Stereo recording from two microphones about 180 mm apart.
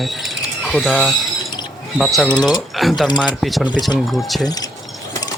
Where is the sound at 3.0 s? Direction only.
25° left (ahead or behind).